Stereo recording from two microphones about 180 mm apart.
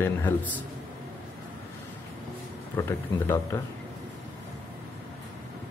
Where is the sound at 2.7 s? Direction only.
15° left (ahead or behind).